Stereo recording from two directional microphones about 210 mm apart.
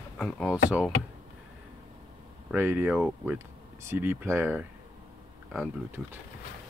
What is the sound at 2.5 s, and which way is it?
Speech, 10° right (ahead or behind).